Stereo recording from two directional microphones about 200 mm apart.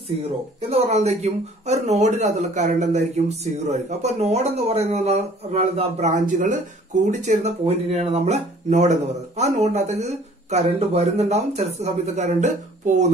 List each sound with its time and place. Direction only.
0.6 s speech: 30° right (ahead or behind)